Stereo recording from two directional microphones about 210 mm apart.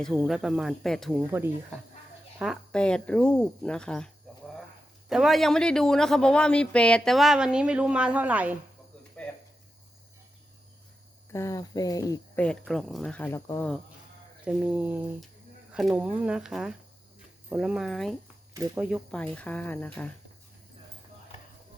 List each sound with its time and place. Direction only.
0.0 s speech: centre (ahead or behind)
1.3 s speech: 10° right (ahead or behind)
2.4 s speech: centre (ahead or behind)
11.3 s speech: 15° left (ahead or behind)
12.5 s speech: centre (ahead or behind)
14.4 s speech: 5° right (ahead or behind)
18.5 s speech: 10° right (ahead or behind)
19.1 s speech: 5° left (ahead or behind)